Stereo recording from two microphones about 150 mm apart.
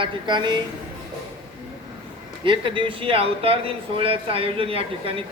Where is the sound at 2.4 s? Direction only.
35° right (ahead or behind).